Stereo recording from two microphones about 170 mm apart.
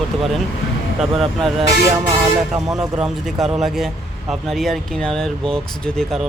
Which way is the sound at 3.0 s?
Centre (ahead or behind).